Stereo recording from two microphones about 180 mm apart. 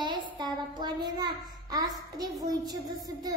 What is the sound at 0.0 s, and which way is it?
Child singing, 25° right (ahead or behind).